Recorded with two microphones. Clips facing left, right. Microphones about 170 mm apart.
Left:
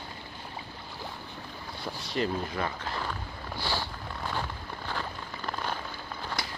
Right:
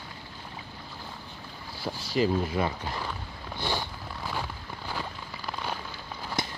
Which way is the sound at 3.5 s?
20° right (ahead or behind).